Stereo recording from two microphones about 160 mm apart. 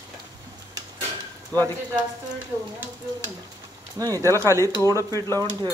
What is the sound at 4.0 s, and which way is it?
Speech, 20° right (ahead or behind).